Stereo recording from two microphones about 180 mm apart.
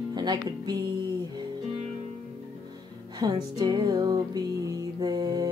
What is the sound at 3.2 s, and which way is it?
Music, 25° right (ahead or behind).